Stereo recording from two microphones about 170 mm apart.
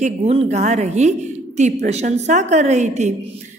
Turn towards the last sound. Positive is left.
turn(degrees=-45)  # may be behind; listen again after turning